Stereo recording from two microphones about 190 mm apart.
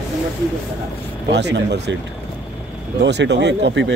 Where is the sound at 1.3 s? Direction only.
60° right (ahead or behind).